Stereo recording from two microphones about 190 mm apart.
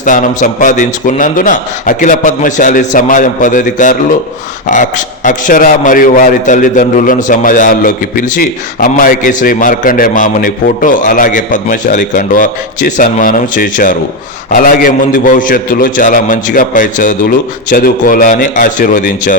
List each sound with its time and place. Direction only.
0.0 s a man's voice: 45° left (ahead or behind)